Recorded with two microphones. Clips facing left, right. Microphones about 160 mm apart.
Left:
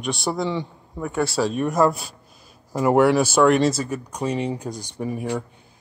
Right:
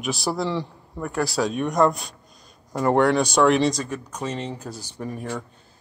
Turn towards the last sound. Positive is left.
turn(degrees=10)  # may be behind; listen again after turning